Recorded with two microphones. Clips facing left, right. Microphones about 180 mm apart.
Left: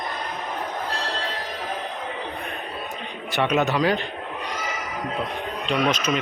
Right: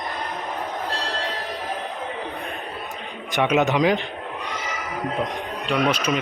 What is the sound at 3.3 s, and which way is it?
Speech, 15° right (ahead or behind).